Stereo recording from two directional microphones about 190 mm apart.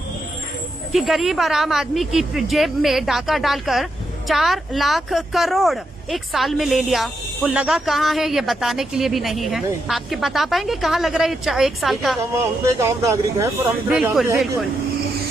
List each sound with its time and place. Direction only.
0.9 s speech: centre (ahead or behind)
12.7 s speech: 15° right (ahead or behind)